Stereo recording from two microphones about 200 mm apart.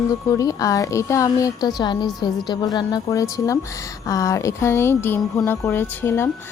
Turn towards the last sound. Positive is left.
turn(degrees=10)  # may be behind; listen again after turning